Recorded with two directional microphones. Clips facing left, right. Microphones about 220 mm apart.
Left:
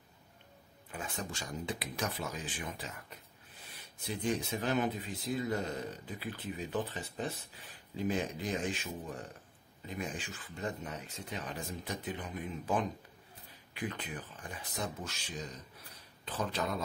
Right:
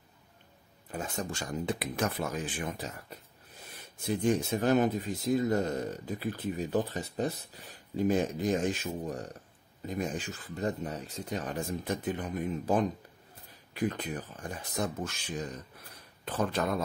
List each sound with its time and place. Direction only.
0.9 s speech: 40° right (ahead or behind)
4.0 s speech: 45° right (ahead or behind)